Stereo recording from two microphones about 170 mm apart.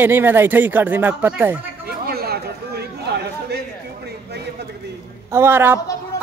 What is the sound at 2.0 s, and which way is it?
Chatter, 65° right (ahead or behind).